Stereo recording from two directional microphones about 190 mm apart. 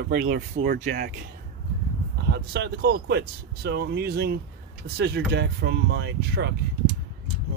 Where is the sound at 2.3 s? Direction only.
65° right (ahead or behind).